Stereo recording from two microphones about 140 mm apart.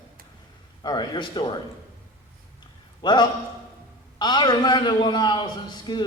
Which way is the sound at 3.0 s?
30° left (ahead or behind).